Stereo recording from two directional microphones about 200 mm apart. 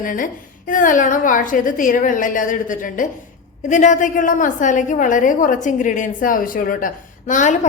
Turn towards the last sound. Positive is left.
turn(degrees=40)  # may be behind; listen again after turning